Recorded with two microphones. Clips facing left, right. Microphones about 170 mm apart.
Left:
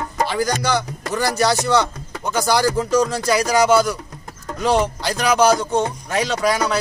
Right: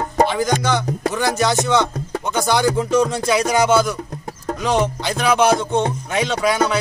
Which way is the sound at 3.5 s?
25° right (ahead or behind).